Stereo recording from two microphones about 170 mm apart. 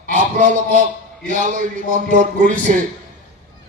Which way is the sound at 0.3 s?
50° right (ahead or behind).